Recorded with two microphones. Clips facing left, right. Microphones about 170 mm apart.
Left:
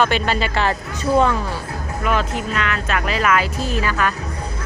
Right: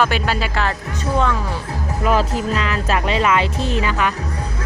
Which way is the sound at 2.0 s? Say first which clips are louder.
Right 3 dB; 35° right (ahead or behind).